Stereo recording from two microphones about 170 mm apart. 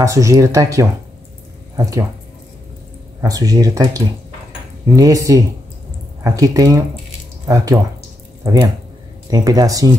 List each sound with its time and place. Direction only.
0.0 s speech: 20° right (ahead or behind)
3.2 s speech: 20° right (ahead or behind)